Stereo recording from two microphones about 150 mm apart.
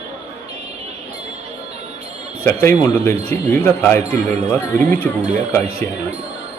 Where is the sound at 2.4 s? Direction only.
15° left (ahead or behind).